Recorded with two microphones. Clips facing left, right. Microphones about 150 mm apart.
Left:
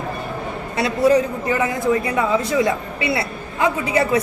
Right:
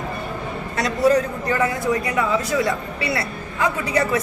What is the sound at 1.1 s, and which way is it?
A man's voice, 15° left (ahead or behind).